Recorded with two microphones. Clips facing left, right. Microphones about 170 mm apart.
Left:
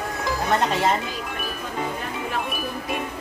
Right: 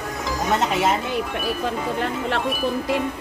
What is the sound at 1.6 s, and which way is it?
Speech, 85° right.